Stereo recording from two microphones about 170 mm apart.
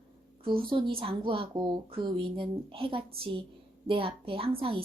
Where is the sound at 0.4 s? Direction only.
30° right (ahead or behind).